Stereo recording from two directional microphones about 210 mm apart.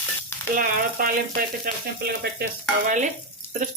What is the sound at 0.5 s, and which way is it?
Frying, 40° right (ahead or behind).